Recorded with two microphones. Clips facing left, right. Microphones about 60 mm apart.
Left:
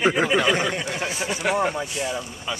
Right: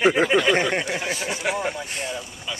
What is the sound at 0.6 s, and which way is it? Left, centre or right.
Speech, right.